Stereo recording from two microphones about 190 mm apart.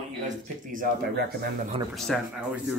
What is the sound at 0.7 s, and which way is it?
Speech, 50° right (ahead or behind).